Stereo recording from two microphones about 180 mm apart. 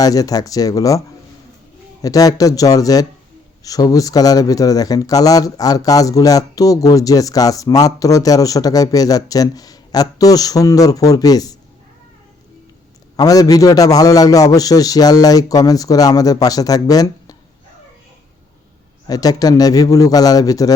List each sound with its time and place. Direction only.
0.0 s speech: 20° left (ahead or behind)
13.1 s speech: 20° left (ahead or behind)
19.0 s speech: 20° left (ahead or behind)